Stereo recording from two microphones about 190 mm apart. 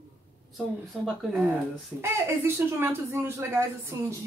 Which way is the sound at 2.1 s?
10° right (ahead or behind).